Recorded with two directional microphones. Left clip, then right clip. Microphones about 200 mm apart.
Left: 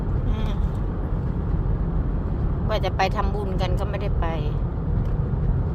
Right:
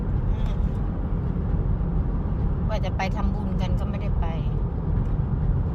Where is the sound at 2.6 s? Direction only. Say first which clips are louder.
Left 7 dB; 25° left (ahead or behind).